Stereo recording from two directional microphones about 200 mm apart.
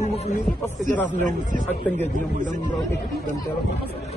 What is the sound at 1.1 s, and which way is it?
Speech, 40° right (ahead or behind).